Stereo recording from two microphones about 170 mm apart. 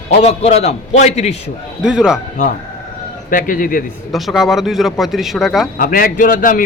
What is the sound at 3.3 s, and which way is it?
Speech, 55° left (ahead or behind).